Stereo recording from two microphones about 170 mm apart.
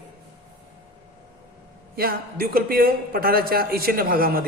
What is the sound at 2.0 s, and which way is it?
A man's voice, 60° right (ahead or behind).